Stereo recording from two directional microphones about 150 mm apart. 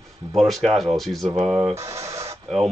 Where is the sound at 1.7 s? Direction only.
20° right (ahead or behind).